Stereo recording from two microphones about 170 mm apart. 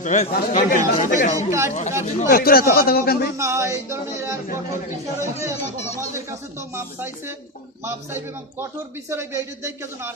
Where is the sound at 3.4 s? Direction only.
15° right (ahead or behind).